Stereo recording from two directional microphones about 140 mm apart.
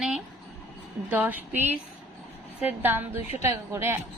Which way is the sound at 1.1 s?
10° right (ahead or behind).